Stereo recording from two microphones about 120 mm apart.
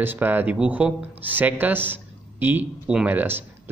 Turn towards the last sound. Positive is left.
turn(degrees=-15)  # may be behind; listen again after turning